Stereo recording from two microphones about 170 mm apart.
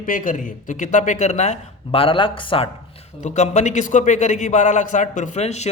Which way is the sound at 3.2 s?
45° left (ahead or behind).